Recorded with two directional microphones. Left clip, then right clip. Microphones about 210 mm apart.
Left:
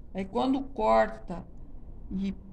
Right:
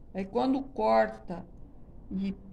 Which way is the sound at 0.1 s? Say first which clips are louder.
Even; centre (ahead or behind).